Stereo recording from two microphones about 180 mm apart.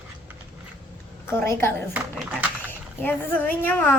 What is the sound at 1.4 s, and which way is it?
Speech, 15° left (ahead or behind).